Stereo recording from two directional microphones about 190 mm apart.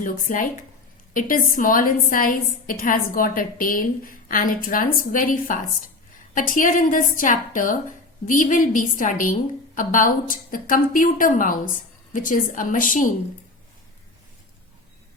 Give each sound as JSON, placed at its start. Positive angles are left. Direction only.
{"t": 0.0, "sound": "a woman's voice", "side_deg": 45}